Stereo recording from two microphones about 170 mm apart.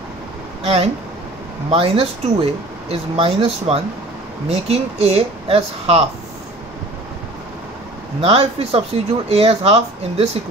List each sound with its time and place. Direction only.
1.7 s speech: 35° right (ahead or behind)
8.2 s speech: 35° right (ahead or behind)